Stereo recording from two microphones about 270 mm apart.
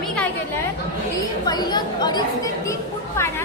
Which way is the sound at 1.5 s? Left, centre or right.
Centre.